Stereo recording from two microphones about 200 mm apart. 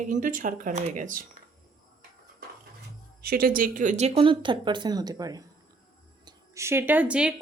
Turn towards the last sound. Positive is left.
turn(degrees=-5)  # may be behind; listen again after turning